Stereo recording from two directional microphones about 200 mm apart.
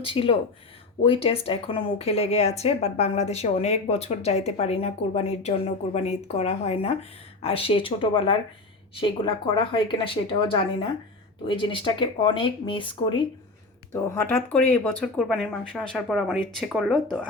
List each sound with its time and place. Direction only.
0.0 s speech: 25° left (ahead or behind)
13.9 s speech: 10° left (ahead or behind)